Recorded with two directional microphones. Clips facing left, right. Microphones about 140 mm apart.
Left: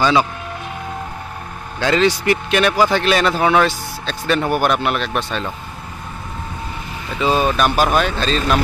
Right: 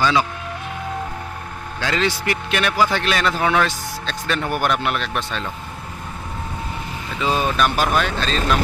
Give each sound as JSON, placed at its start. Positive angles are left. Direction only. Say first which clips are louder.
{"t": 0.0, "sound": "a man's voice", "louder": "left 3 dB", "side_deg": 25}
{"t": 1.8, "sound": "a man's voice", "louder": "left 6 dB", "side_deg": 25}
{"t": 4.0, "sound": "a man's voice", "louder": "left 6 dB", "side_deg": 10}
{"t": 7.5, "sound": "a man's voice", "louder": "left 3 dB", "side_deg": 20}